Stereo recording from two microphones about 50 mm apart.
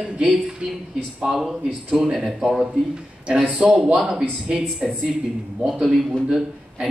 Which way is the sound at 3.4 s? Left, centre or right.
Right.